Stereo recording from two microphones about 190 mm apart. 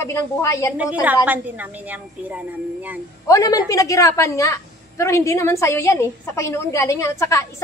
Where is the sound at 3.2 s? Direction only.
20° left (ahead or behind).